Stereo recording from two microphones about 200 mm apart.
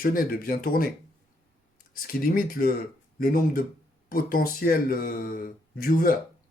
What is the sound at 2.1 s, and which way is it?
Speech, 45° left (ahead or behind).